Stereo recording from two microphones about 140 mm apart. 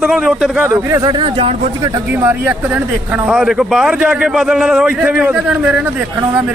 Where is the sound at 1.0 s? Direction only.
35° right (ahead or behind).